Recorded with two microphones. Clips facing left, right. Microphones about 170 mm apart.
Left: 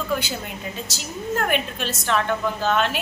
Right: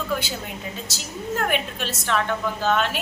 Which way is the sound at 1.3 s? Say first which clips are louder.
Left 1 dB; centre (ahead or behind).